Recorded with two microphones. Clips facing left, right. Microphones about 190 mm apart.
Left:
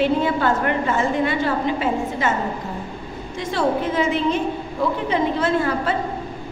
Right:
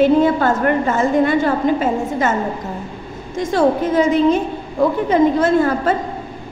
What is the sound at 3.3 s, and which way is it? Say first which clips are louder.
A woman's voice: right 6 dB; 45° right (ahead or behind).